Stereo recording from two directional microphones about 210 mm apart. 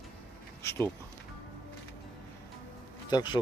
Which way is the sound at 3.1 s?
20° left (ahead or behind).